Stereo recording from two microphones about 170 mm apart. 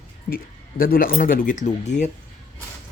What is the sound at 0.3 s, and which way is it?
Speech, 50° left (ahead or behind).